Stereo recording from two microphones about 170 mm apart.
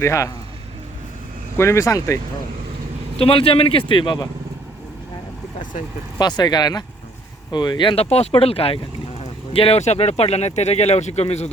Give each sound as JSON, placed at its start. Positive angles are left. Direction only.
{"t": 0.0, "sound": "speech", "side_deg": 15}
{"t": 1.5, "sound": "speech", "side_deg": 15}
{"t": 3.2, "sound": "speech", "side_deg": 35}
{"t": 6.1, "sound": "speech", "side_deg": 25}